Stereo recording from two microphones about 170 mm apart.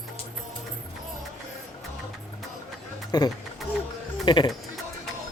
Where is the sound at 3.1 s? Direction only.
25° left (ahead or behind).